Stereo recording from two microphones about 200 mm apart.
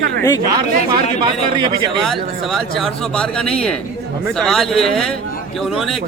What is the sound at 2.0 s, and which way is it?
Speech, centre (ahead or behind).